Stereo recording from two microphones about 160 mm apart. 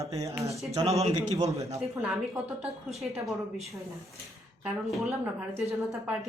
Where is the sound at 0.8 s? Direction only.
40° right (ahead or behind).